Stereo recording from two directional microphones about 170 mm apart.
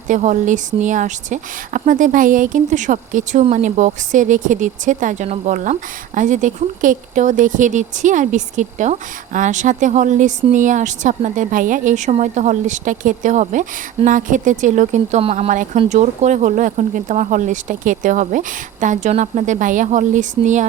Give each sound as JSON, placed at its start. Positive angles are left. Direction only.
{"t": 0.1, "sound": "speech", "side_deg": -45}